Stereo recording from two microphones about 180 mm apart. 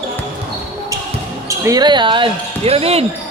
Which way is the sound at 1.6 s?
25° right (ahead or behind).